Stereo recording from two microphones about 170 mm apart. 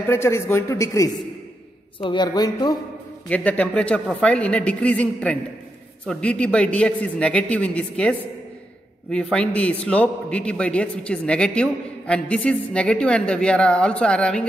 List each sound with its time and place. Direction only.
0.1 s a man's voice: 15° left (ahead or behind)
3.3 s a man's voice: 10° left (ahead or behind)